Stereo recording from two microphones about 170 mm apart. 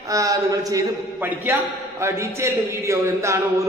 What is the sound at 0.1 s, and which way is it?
A man's voice, 20° right (ahead or behind).